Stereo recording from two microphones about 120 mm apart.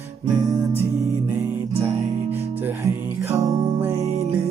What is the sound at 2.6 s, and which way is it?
Music, 25° right (ahead or behind).